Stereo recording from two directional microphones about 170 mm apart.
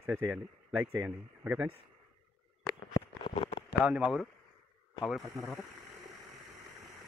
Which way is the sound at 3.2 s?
35° left (ahead or behind).